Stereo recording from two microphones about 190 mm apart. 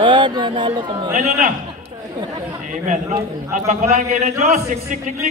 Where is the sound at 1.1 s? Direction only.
40° right (ahead or behind).